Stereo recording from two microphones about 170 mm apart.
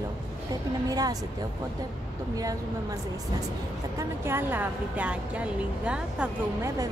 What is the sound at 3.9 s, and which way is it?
Speech, 15° right (ahead or behind).